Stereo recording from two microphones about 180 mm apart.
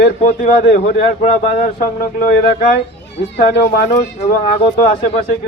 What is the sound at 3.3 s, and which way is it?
Speech, 60° left (ahead or behind).